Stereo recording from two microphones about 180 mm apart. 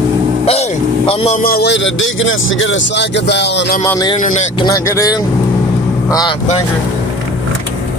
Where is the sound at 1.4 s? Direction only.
60° left (ahead or behind); by 3.7 s 75° left (ahead or behind).